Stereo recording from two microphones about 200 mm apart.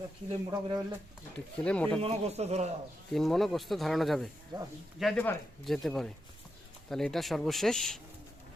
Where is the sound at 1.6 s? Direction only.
5° left (ahead or behind).